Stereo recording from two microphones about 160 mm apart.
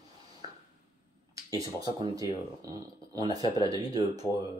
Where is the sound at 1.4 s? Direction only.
20° right (ahead or behind).